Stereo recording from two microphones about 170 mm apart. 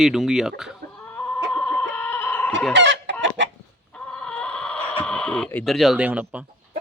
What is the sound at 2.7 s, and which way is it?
Chicken, 90° right.